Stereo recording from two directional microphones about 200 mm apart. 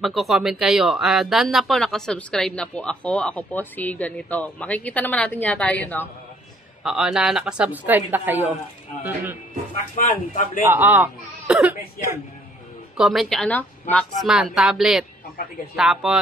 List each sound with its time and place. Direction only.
0.0 s speech: centre (ahead or behind)
10.0 s a man's voice: 40° left (ahead or behind)
10.6 s speech: 10° right (ahead or behind)
12.9 s speech: centre (ahead or behind)
14.2 s speech: centre (ahead or behind)